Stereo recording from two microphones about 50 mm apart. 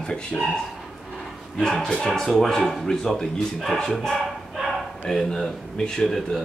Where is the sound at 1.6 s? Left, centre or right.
Centre.